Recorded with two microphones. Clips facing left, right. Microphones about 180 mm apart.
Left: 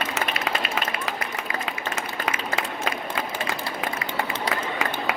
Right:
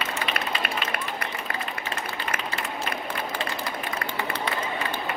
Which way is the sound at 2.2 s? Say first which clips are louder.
Left 5 dB; 90° left.